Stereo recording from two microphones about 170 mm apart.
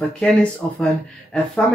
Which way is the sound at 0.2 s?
5° left (ahead or behind).